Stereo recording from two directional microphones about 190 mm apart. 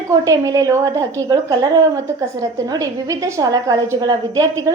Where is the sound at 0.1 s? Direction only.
20° right (ahead or behind).